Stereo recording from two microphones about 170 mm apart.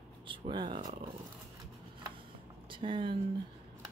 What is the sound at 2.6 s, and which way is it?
Speech, 30° right (ahead or behind).